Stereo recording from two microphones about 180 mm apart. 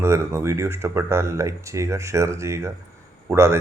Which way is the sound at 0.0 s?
15° right (ahead or behind).